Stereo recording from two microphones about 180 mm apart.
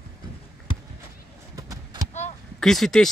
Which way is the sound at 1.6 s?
20° right (ahead or behind).